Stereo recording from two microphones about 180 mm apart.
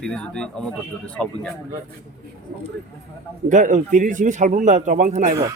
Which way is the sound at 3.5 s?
45° right (ahead or behind).